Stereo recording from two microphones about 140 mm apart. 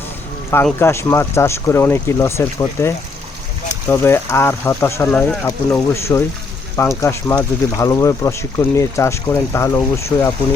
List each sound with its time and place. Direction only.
0.6 s speech: 15° left (ahead or behind)
3.9 s speech: 20° left (ahead or behind)
5.0 s speech: 5° left (ahead or behind)
5.5 s speech: 20° left (ahead or behind)